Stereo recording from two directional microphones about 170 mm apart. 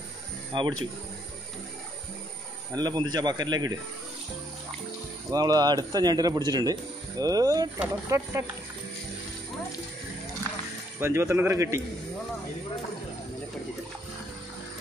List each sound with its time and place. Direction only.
0.5 s speech: 25° right (ahead or behind)
2.7 s speech: 25° right (ahead or behind)
5.3 s a man's voice: 25° right (ahead or behind)
11.0 s a man's voice: 15° right (ahead or behind)